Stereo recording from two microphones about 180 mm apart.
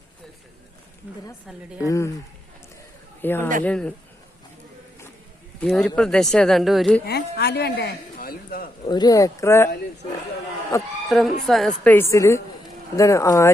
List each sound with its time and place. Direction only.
1.8 s a woman's voice: 20° left (ahead or behind)
3.2 s a woman's voice: 10° left (ahead or behind)
5.5 s speech: 5° left (ahead or behind)
7.0 s a man's voice: 65° left (ahead or behind)
8.8 s speech: 25° left (ahead or behind)
10.7 s a woman's voice: 15° left (ahead or behind)
11.1 s a woman's voice: centre (ahead or behind); by 13.5 s 15° left (ahead or behind)